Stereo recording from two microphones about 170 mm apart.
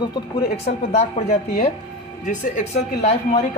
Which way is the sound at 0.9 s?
40° left (ahead or behind).